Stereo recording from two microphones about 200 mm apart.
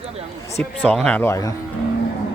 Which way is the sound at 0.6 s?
5° left (ahead or behind).